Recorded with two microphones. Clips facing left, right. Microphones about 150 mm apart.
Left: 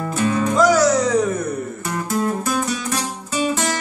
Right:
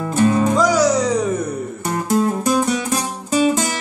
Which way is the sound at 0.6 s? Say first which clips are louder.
Even; 10° right (ahead or behind).